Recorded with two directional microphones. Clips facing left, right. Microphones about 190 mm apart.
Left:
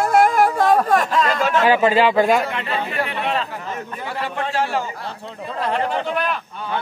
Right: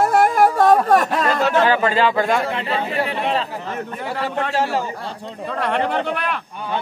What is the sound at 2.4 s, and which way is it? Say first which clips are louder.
Speech: right 2 dB; 30° right (ahead or behind).